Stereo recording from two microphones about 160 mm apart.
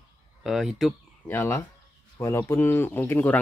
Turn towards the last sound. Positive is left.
turn(degrees=10)  # may be behind; listen again after turning